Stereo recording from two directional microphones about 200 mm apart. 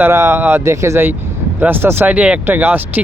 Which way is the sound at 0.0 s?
10° right (ahead or behind).